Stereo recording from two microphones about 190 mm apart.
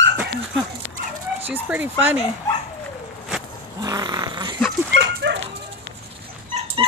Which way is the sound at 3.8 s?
20° right (ahead or behind).